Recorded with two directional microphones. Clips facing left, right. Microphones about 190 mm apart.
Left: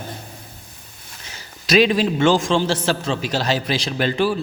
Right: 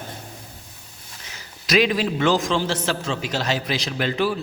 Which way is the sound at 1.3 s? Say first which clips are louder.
Left 3 dB; 30° left (ahead or behind).